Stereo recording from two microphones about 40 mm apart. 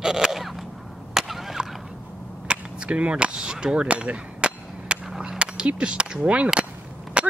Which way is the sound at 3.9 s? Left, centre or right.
Right.